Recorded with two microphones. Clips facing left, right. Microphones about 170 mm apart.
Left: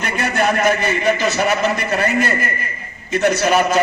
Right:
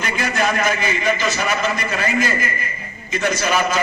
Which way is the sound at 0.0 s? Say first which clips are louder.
Left 2 dB; 60° left (ahead or behind).